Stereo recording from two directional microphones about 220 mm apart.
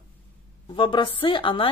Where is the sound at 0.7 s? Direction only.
20° left (ahead or behind).